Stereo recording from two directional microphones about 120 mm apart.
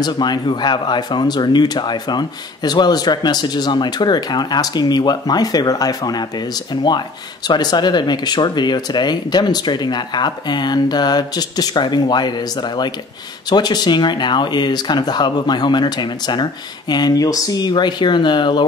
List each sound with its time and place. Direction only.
0.0 s speech: 35° left (ahead or behind)